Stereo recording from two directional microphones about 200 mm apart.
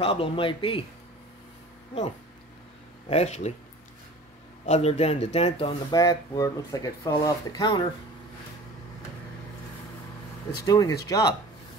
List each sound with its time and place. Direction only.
0.0 s speech: 25° left (ahead or behind)
3.1 s speech: 35° left (ahead or behind)
4.6 s speech: 30° left (ahead or behind)
5.9 s speech: 20° left (ahead or behind)
10.6 s speech: 20° left (ahead or behind)